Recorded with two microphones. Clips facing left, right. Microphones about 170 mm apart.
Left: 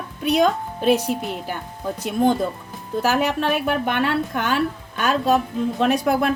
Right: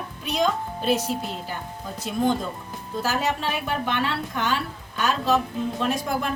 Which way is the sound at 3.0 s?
60° left (ahead or behind).